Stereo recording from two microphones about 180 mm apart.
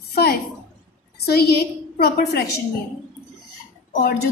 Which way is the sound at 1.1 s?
60° left (ahead or behind).